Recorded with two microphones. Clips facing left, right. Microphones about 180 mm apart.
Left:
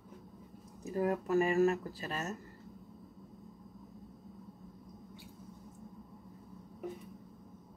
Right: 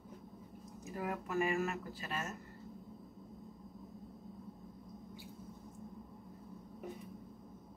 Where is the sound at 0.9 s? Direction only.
35° left (ahead or behind).